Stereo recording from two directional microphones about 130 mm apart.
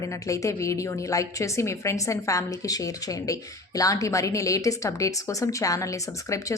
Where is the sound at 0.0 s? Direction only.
25° left (ahead or behind).